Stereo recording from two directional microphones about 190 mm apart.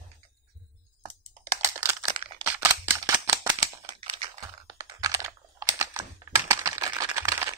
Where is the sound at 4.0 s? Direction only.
30° right (ahead or behind).